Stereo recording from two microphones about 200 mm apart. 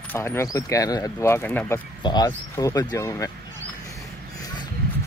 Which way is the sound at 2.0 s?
20° left (ahead or behind).